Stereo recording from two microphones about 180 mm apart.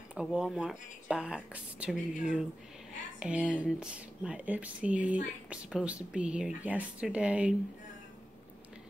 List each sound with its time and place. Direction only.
0.1 s speech: 5° right (ahead or behind)